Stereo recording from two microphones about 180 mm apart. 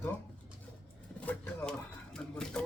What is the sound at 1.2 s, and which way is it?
Speech, 10° left (ahead or behind).